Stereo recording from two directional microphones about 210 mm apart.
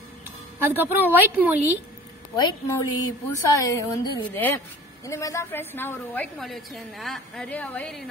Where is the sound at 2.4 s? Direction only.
20° left (ahead or behind).